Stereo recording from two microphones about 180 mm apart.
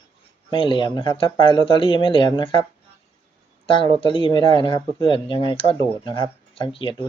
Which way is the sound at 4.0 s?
30° left (ahead or behind).